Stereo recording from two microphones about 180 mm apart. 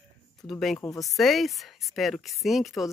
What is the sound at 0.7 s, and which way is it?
Speech, 20° left (ahead or behind).